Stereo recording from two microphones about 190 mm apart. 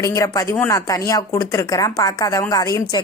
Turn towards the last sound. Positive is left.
turn(degrees=20)  # may be behind; listen again after turning